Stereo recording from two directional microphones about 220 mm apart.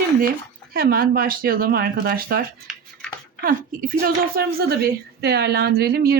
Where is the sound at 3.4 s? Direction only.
40° right (ahead or behind).